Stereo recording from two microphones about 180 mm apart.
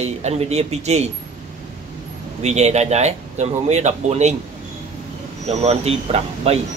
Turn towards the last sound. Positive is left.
turn(degrees=-35)  # may be behind; listen again after turning